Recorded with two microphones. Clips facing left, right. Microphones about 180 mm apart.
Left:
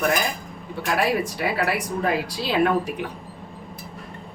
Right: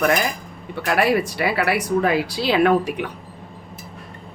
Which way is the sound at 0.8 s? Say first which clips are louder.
Right 4 dB; 70° right (ahead or behind).